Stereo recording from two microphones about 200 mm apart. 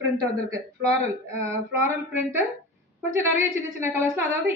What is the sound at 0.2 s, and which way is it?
A woman's voice, 15° right (ahead or behind).